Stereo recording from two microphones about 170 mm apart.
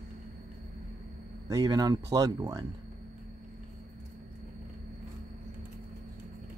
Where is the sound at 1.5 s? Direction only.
20° right (ahead or behind).